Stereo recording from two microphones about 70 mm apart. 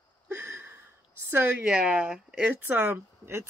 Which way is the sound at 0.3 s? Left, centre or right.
Right.